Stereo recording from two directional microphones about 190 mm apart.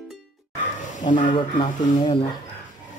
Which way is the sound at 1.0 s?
40° left (ahead or behind).